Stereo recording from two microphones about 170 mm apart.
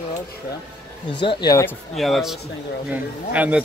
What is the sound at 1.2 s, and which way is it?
Speech, 25° left (ahead or behind).